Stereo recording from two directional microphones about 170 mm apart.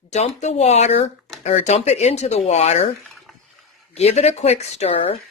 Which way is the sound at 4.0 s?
40° left (ahead or behind).